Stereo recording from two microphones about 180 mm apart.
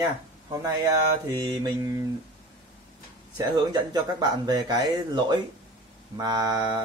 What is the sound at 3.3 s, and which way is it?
Speech, 20° right (ahead or behind).